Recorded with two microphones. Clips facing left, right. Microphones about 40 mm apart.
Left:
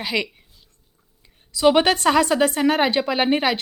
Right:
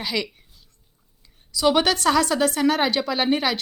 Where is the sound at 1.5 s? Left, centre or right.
Left.